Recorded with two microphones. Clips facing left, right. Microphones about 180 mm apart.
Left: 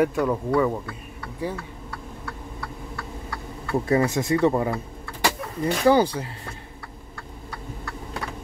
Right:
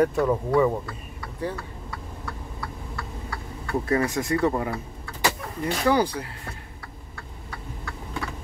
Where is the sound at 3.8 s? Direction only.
25° left (ahead or behind).